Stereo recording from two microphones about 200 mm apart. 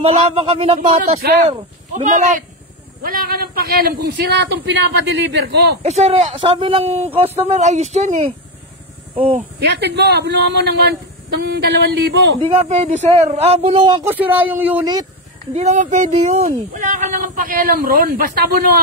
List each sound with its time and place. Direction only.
0.0 s speech: 30° right (ahead or behind)
1.2 s a man's voice: 50° right (ahead or behind)
2.0 s a man's voice: 40° right (ahead or behind); by 5.8 s 60° right (ahead or behind)
5.8 s speech: 35° right (ahead or behind)
9.6 s a man's voice: 55° right (ahead or behind)
12.4 s speech: 30° right (ahead or behind)
14.0 s speech: 10° right (ahead or behind)
15.5 s speech: 35° right (ahead or behind)